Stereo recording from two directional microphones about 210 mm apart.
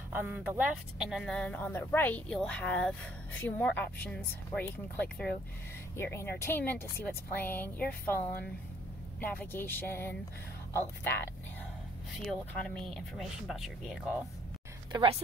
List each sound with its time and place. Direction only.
0.1 s a woman's voice: 10° right (ahead or behind); by 8.2 s 10° left (ahead or behind)
9.2 s a woman's voice: 10° left (ahead or behind)
12.3 s speech: 5° left (ahead or behind)
14.9 s a woman's voice: 20° right (ahead or behind)